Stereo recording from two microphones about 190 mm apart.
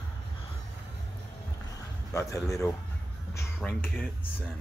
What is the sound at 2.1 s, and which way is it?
Speech, 15° left (ahead or behind).